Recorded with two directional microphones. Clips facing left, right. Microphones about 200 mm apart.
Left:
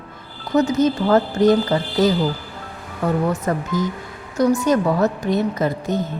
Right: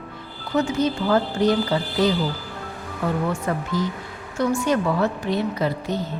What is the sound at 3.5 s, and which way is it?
A woman's voice, 40° left (ahead or behind).